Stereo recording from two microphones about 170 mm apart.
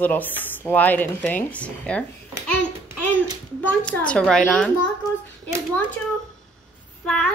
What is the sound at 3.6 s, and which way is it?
Speech, 5° left (ahead or behind).